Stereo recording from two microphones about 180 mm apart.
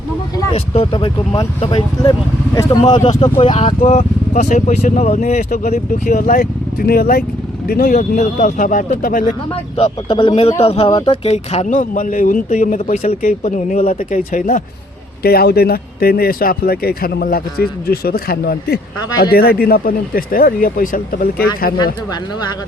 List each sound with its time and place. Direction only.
0.5 s speech: 35° left (ahead or behind)
3.7 s speech: 40° left (ahead or behind)
9.7 s speech: 30° left (ahead or behind); by 14.6 s 45° left (ahead or behind)
15.2 s speech: 60° left (ahead or behind)